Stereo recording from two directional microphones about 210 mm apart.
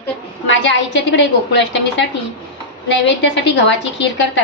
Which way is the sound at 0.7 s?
60° left (ahead or behind).